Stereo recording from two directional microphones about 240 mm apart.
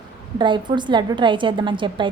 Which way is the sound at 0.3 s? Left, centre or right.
Centre.